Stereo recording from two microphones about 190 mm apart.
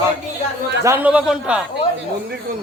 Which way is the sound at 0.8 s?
10° right (ahead or behind).